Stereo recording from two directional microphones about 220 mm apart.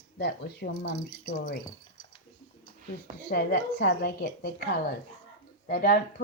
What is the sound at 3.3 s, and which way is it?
A woman's voice, 45° left (ahead or behind).